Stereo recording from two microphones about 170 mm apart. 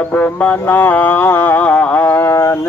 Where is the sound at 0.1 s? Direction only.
10° left (ahead or behind).